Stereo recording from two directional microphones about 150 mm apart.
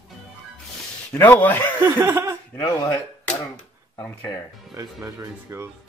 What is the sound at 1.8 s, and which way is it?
Chuckle, 15° right (ahead or behind).